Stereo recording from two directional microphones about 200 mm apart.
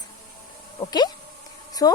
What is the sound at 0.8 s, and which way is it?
A woman's voice, 20° left (ahead or behind).